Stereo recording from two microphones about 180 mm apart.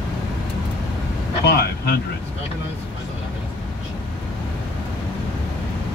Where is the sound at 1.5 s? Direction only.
60° left (ahead or behind).